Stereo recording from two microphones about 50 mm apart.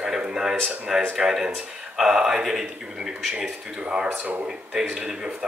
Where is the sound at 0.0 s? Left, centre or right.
Centre.